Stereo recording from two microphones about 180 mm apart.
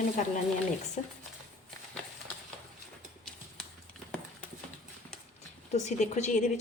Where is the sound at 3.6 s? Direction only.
5° left (ahead or behind).